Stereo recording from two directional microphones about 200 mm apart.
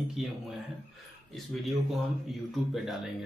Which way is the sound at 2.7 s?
Centre (ahead or behind).